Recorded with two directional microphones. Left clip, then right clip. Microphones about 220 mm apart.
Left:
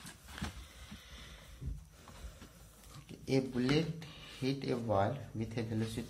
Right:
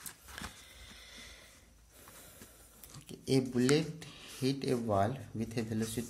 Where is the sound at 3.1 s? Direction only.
45° right (ahead or behind).